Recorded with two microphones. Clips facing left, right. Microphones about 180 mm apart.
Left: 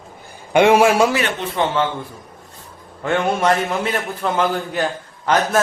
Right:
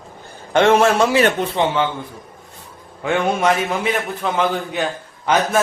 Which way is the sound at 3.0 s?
5° right (ahead or behind).